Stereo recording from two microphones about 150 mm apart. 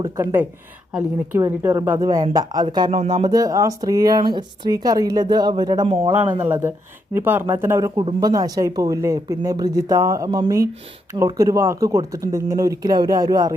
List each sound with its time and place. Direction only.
0.0 s speech: 20° right (ahead or behind)
6.4 s speech: 15° right (ahead or behind)
10.2 s speech: 35° right (ahead or behind)
11.2 s speech: 25° right (ahead or behind)